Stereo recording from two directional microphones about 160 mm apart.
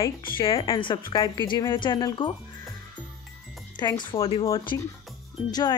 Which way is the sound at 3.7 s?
30° left (ahead or behind).